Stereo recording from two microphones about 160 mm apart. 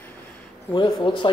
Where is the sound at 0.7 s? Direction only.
30° left (ahead or behind).